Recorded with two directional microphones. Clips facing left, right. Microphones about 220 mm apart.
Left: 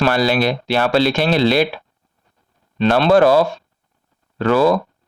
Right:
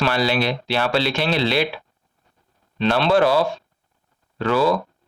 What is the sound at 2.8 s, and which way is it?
Speech, 45° left (ahead or behind).